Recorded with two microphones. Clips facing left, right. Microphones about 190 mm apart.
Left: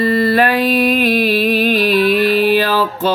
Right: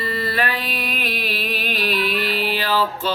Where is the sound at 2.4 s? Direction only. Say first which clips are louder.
Left 8 dB; 45° left (ahead or behind).